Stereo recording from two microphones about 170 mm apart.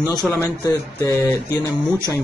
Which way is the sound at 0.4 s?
20° left (ahead or behind).